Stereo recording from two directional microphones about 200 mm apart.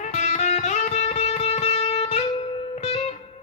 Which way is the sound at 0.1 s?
35° left (ahead or behind).